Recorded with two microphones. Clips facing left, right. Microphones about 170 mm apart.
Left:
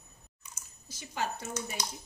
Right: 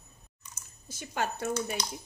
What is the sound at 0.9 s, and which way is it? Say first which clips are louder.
Speech: right 2 dB; 60° right (ahead or behind).